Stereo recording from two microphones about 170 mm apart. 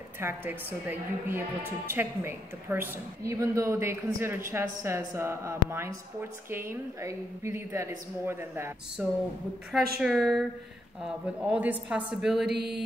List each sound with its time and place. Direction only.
0.2 s a woman's voice: 15° right (ahead or behind)